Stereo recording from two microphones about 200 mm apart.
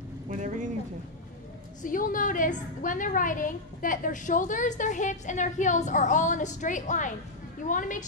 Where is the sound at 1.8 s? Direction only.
45° left (ahead or behind).